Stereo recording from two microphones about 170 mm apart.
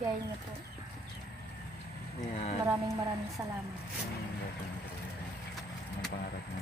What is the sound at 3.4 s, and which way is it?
Speech, 15° right (ahead or behind).